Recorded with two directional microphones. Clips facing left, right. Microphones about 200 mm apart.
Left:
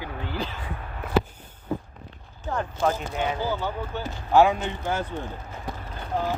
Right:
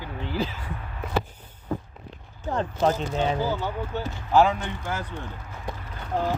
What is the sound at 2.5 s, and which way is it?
Speech, 25° right (ahead or behind).